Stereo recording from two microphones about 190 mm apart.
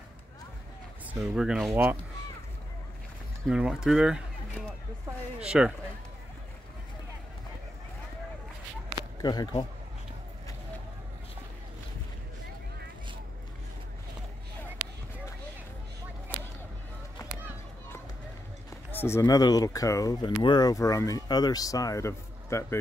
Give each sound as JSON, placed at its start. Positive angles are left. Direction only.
{"t": 1.3, "sound": "speech", "side_deg": 0}
{"t": 3.4, "sound": "speech", "side_deg": -5}
{"t": 9.2, "sound": "speech", "side_deg": 20}
{"t": 18.7, "sound": "speech", "side_deg": 10}